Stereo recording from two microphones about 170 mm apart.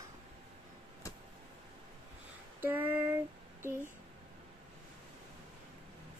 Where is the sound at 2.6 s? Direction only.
10° right (ahead or behind).